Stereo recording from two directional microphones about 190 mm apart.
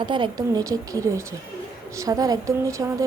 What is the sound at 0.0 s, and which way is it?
A woman's voice, 25° right (ahead or behind).